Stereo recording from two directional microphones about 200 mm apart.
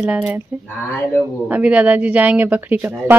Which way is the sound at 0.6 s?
10° left (ahead or behind).